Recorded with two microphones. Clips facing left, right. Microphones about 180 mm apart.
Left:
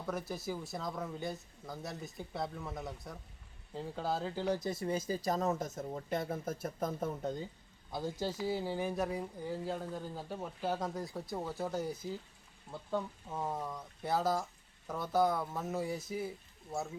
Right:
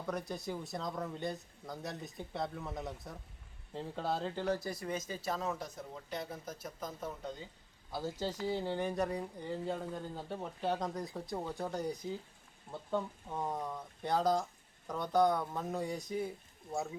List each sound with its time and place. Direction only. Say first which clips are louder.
0.1 s speech: even; 5° left (ahead or behind); by 7.3 s 50° left (ahead or behind)
8.1 s speech: even; 10° left (ahead or behind)